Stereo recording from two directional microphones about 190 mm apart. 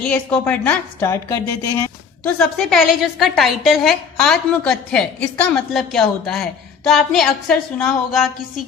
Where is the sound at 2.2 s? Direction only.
5° left (ahead or behind).